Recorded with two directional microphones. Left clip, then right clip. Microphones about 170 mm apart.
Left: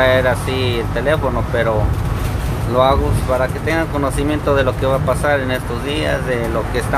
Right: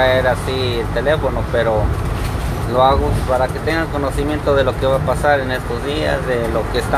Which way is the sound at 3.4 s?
15° left (ahead or behind).